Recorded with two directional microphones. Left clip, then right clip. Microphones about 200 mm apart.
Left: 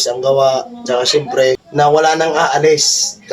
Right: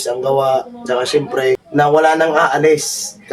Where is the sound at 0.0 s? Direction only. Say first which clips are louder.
Left 3 dB; 15° right (ahead or behind).